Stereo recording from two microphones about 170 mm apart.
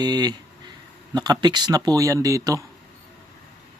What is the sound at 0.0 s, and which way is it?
Speech, 25° right (ahead or behind).